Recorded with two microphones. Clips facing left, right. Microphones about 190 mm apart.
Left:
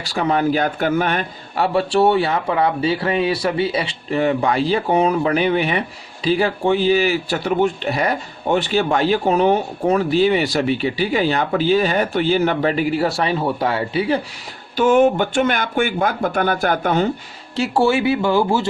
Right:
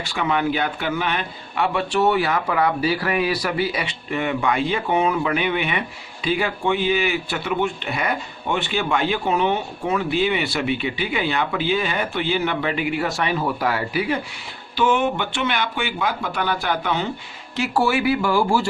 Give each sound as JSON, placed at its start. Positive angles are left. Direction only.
{"t": 0.0, "sound": "speech", "side_deg": 40}
{"t": 14.8, "sound": "speech", "side_deg": 45}
{"t": 17.6, "sound": "speech", "side_deg": 25}